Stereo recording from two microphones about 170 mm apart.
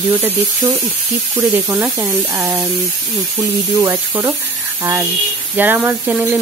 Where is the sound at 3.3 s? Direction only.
25° right (ahead or behind).